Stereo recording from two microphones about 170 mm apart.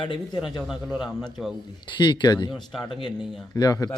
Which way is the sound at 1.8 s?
25° left (ahead or behind).